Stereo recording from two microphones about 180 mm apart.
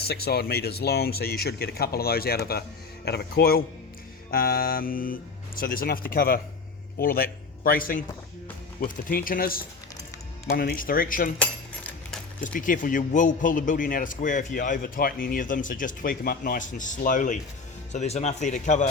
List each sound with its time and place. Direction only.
0.1 s a man's voice: 60° left (ahead or behind)
11.3 s a sound: 5° left (ahead or behind)
12.4 s a man's voice: 45° left (ahead or behind)